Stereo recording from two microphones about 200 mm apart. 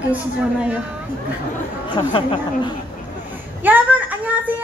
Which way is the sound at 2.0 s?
25° left (ahead or behind).